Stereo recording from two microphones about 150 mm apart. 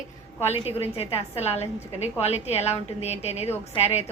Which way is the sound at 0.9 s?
40° left (ahead or behind).